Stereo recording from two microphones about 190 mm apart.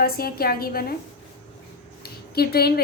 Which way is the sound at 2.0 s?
55° left (ahead or behind).